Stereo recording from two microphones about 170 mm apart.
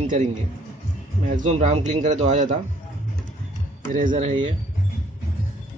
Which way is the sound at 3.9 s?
45° right (ahead or behind).